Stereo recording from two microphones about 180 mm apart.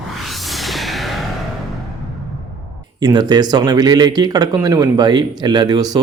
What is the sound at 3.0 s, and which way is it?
Speech, 25° right (ahead or behind).